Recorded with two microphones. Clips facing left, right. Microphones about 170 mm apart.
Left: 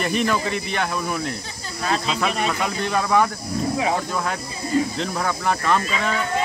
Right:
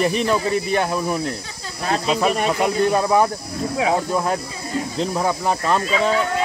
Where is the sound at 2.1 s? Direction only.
45° right (ahead or behind).